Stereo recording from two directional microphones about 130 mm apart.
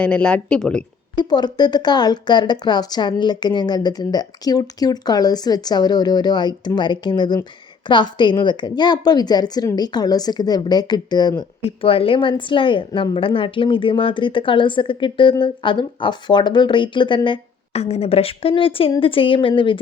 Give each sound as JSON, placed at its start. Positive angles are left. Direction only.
{"t": 0.0, "sound": "speech", "side_deg": 10}
{"t": 1.1, "sound": "a woman's voice", "side_deg": 35}
{"t": 11.6, "sound": "a woman's voice", "side_deg": 45}